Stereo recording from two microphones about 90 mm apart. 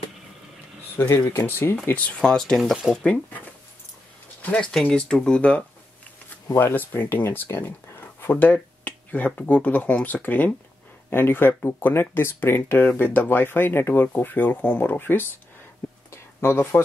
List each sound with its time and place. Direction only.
0.9 s speech: 25° left (ahead or behind); by 3.2 s 5° left (ahead or behind)
4.4 s speech: 15° left (ahead or behind)
16.1 s a sound: 30° left (ahead or behind)